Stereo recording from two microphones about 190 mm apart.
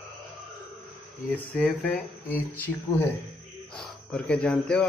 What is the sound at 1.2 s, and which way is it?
Speech, 10° left (ahead or behind).